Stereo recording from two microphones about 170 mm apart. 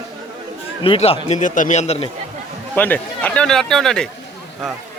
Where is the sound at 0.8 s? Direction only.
35° left (ahead or behind).